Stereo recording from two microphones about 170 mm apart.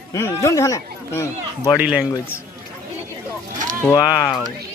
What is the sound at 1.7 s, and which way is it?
Speech, 5° right (ahead or behind).